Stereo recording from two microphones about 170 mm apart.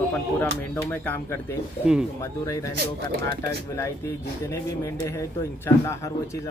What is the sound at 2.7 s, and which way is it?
Speech, 65° right (ahead or behind).